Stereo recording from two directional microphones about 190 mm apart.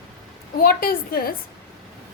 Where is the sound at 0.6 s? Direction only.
50° left (ahead or behind).